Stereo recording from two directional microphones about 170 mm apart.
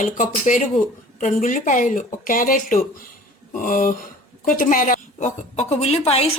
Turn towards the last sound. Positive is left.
turn(degrees=40)  # may be behind; listen again after turning